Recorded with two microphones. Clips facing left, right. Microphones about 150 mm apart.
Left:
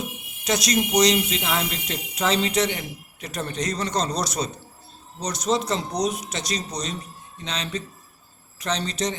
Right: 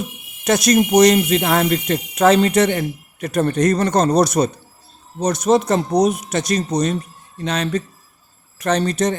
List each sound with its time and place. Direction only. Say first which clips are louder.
0.4 s speech: right 8 dB; 55° right (ahead or behind)